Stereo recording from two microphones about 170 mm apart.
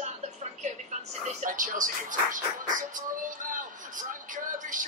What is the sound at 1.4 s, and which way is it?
Music, 50° right (ahead or behind).